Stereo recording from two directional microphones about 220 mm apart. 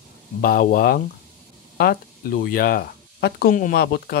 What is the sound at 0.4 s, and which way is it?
Speech, 40° left (ahead or behind).